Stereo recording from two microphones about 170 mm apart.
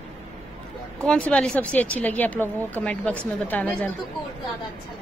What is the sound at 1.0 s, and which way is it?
A woman's voice, 5° left (ahead or behind).